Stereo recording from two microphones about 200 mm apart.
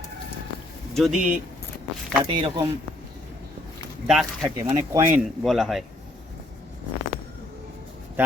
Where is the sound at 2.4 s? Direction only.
25° right (ahead or behind).